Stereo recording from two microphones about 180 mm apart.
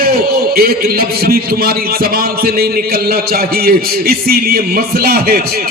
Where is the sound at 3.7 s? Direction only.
55° right (ahead or behind).